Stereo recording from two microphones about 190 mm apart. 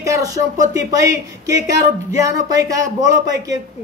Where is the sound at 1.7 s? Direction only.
15° right (ahead or behind).